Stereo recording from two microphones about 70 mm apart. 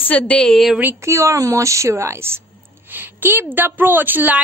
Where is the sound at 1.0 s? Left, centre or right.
Right.